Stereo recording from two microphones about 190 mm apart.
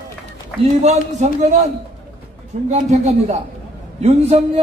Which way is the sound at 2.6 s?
35° right (ahead or behind).